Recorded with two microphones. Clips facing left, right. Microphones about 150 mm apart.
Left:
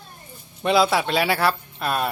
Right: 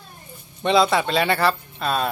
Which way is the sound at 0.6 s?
5° left (ahead or behind).